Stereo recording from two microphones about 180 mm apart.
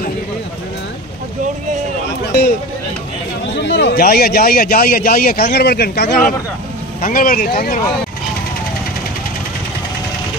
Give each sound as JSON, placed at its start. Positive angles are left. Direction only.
{"t": 3.5, "sound": "a man's voice", "side_deg": 75}